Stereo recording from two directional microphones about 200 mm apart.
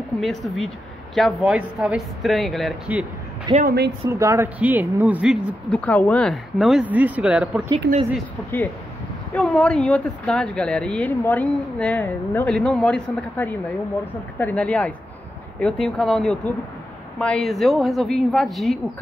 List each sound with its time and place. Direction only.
0.2 s a woman's voice: centre (ahead or behind)
3.5 s speech: 50° right (ahead or behind)
4.1 s speech: 15° right (ahead or behind)
9.3 s a woman's voice: 5° left (ahead or behind)